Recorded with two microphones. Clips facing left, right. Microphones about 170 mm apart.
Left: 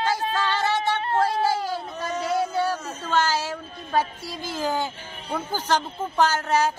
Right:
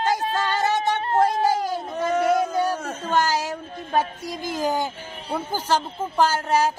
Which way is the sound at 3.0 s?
15° right (ahead or behind).